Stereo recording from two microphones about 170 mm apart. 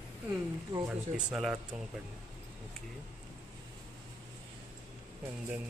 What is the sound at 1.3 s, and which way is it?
Speech, 5° right (ahead or behind).